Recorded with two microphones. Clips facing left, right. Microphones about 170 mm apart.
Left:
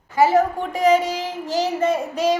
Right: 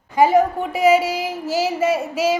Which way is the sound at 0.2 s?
10° right (ahead or behind).